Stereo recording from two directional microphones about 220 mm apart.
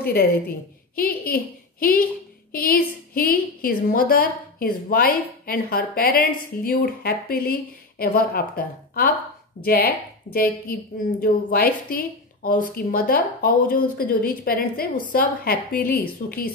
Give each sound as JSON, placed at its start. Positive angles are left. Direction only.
{"t": 0.0, "sound": "a woman's voice", "side_deg": 45}